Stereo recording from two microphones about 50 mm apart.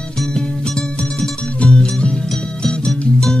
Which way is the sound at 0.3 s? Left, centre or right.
Centre.